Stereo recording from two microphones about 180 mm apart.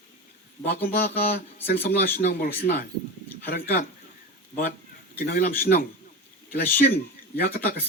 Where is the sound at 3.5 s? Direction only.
55° left (ahead or behind).